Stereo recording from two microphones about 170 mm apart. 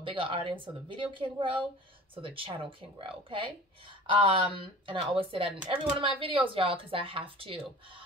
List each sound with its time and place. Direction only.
0.0 s speech: 30° right (ahead or behind)